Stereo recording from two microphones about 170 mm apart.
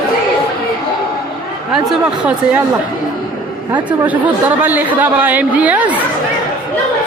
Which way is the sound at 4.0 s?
10° right (ahead or behind).